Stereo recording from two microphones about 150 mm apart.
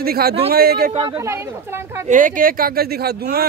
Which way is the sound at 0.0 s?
90° right.